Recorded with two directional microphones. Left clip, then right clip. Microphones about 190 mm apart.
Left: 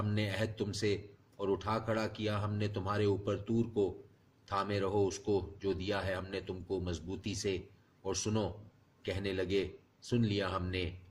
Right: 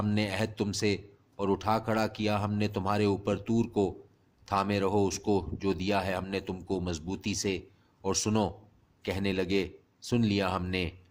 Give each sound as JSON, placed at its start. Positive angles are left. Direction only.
{"t": 0.0, "sound": "speech", "side_deg": -50}